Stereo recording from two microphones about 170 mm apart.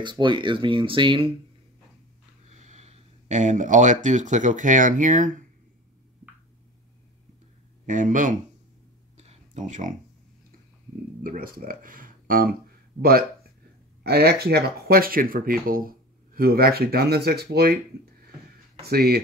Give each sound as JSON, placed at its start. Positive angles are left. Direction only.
{"t": 0.0, "sound": "speech", "side_deg": -30}
{"t": 2.5, "sound": "speech", "side_deg": -40}
{"t": 7.8, "sound": "speech", "side_deg": -50}
{"t": 9.1, "sound": "a sound", "side_deg": -40}
{"t": 11.2, "sound": "speech", "side_deg": -60}
{"t": 14.0, "sound": "speech", "side_deg": -70}
{"t": 18.8, "sound": "speech", "side_deg": -65}